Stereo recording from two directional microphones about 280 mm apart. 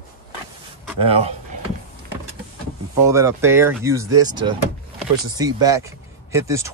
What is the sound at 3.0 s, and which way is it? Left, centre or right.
Speech, centre.